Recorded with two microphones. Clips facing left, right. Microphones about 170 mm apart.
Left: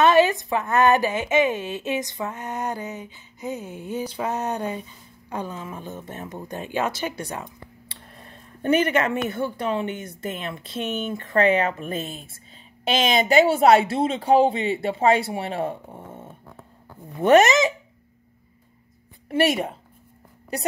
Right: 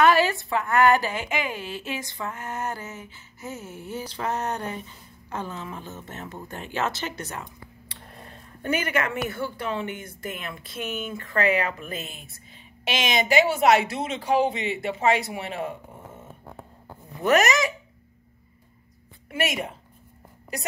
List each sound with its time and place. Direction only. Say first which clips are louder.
0.0 s a woman's voice: left 3 dB; 20° left (ahead or behind)
8.6 s speech: left 6 dB; 25° left (ahead or behind)
19.2 s a woman's voice: left 7 dB; 35° left (ahead or behind)